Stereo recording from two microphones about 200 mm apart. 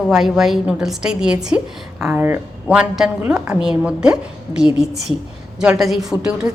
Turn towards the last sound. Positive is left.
turn(degrees=-5)  # may be behind; listen again after turning